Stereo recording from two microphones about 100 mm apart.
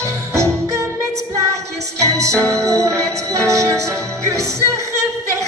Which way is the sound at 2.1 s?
30° right (ahead or behind).